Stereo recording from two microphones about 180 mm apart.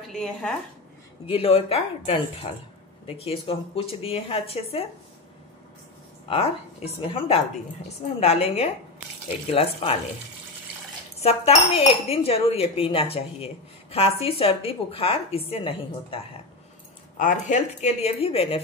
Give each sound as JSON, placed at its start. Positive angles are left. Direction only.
{"t": 0.1, "sound": "speech", "side_deg": 5}
{"t": 1.2, "sound": "speech", "side_deg": 30}
{"t": 6.2, "sound": "speech", "side_deg": 35}
{"t": 11.1, "sound": "speech", "side_deg": 35}
{"t": 17.2, "sound": "speech", "side_deg": 45}